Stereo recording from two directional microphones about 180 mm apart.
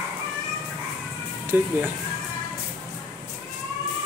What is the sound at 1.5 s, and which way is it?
Speech, 10° right (ahead or behind).